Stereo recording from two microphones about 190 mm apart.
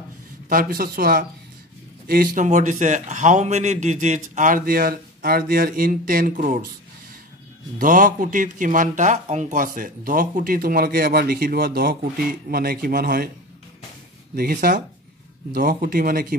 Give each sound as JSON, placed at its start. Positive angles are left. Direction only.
{"t": 0.5, "sound": "speech", "side_deg": -50}
{"t": 7.8, "sound": "speech", "side_deg": -45}
{"t": 14.3, "sound": "speech", "side_deg": -50}